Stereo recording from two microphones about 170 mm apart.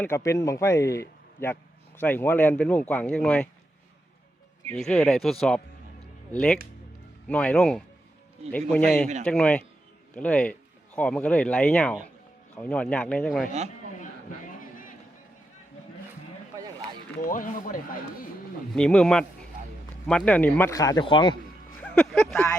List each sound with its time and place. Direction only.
0.0 s speech: 15° left (ahead or behind)
4.7 s speech: 5° left (ahead or behind)
7.3 s speech: 5° left (ahead or behind)
17.2 s speech: 50° left (ahead or behind)
18.7 s speech: 5° left (ahead or behind); by 21.3 s 30° left (ahead or behind)
21.8 s speech: 5° left (ahead or behind)